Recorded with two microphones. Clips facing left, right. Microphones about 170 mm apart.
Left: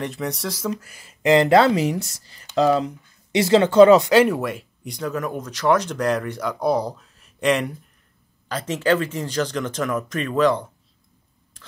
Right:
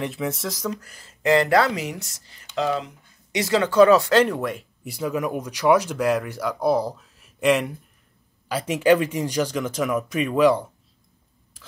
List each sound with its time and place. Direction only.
0.0 s speech: centre (ahead or behind); by 4.1 s 20° left (ahead or behind)
4.1 s speech: 10° left (ahead or behind); by 10.7 s 10° right (ahead or behind)